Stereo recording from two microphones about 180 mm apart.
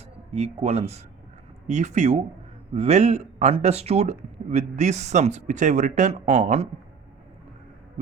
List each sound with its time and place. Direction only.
0.3 s speech: 40° right (ahead or behind)